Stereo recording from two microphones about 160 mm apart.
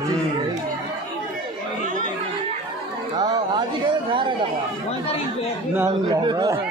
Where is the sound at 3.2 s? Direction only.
25° right (ahead or behind).